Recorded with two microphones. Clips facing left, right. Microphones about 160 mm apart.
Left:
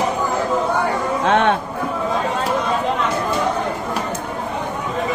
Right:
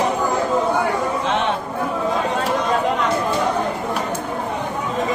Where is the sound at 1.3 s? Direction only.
60° left (ahead or behind).